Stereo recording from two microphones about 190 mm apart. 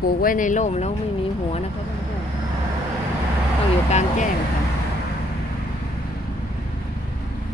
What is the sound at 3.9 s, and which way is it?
Speech, 35° left (ahead or behind).